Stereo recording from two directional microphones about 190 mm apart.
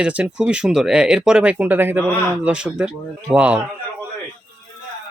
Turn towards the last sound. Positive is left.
turn(degrees=-5)  # may be behind; listen again after turning